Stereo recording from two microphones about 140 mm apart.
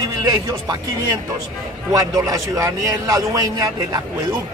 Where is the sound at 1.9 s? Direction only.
25° right (ahead or behind).